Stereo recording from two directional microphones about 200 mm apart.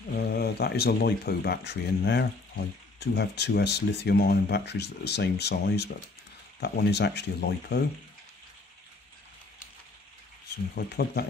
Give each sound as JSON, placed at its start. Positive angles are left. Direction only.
{"t": 0.3, "sound": "speech", "side_deg": 50}
{"t": 10.7, "sound": "speech", "side_deg": 55}